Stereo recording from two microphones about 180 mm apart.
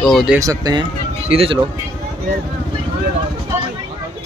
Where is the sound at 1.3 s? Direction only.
30° right (ahead or behind).